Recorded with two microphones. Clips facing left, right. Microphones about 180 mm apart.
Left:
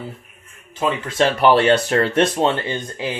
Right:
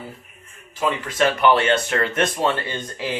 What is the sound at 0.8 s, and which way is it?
Speech, 25° left (ahead or behind).